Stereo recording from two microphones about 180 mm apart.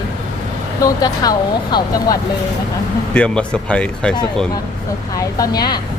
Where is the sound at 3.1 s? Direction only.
5° left (ahead or behind).